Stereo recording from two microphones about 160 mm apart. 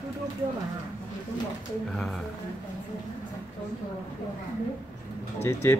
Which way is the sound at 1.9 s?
5° left (ahead or behind).